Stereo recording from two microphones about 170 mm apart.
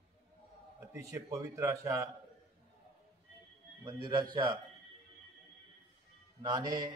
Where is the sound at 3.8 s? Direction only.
25° right (ahead or behind).